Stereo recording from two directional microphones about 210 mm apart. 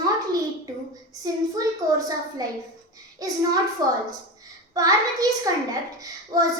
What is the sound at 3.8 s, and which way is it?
Speech, 20° right (ahead or behind).